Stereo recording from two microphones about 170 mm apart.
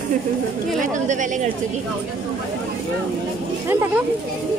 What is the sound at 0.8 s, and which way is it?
Speech, 45° right (ahead or behind).